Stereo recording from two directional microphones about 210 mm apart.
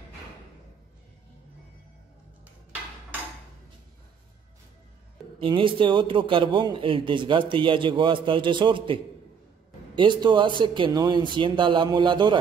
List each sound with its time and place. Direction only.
5.4 s a man's voice: 25° right (ahead or behind)